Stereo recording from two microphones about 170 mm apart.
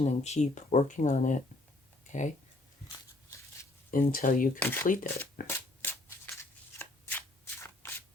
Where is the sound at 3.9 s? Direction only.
55° left (ahead or behind).